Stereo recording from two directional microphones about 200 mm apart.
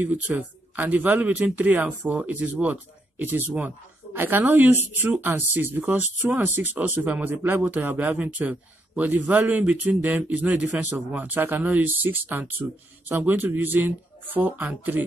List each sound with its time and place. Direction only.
0.0 s speech: 5° right (ahead or behind)